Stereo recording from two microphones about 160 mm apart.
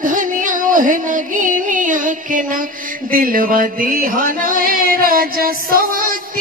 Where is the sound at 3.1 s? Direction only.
60° right (ahead or behind).